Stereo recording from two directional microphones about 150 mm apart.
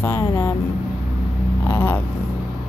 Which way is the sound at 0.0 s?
15° left (ahead or behind).